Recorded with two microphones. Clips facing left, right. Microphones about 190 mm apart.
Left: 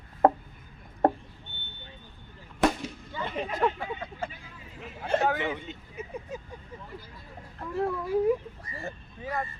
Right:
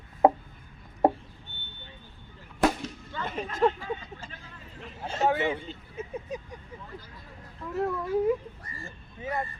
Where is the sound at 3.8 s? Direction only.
60° left (ahead or behind).